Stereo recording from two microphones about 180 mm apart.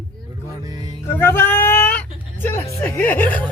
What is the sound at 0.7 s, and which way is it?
Music, 20° right (ahead or behind).